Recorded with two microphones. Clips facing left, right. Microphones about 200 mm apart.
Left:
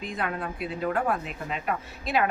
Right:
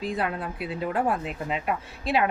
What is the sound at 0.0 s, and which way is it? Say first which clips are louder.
A woman's voice: right 3 dB; 35° right (ahead or behind).